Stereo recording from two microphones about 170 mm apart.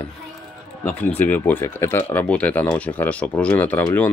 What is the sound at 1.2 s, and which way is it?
Speech, 10° left (ahead or behind).